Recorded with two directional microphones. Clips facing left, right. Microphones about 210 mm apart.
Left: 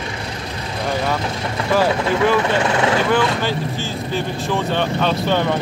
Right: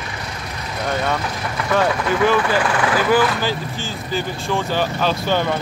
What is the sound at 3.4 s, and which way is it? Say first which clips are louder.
Speech: left 2 dB; centre (ahead or behind).